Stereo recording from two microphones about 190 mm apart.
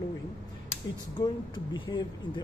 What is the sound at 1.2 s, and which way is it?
A woman's voice, 25° left (ahead or behind).